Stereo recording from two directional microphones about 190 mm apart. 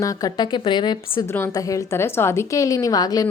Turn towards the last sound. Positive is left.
turn(degrees=20)  # may be behind; listen again after turning